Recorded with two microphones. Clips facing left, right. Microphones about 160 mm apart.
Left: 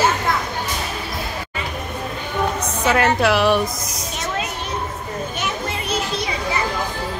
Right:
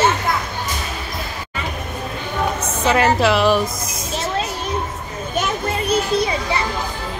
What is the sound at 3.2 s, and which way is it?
Speech, centre (ahead or behind).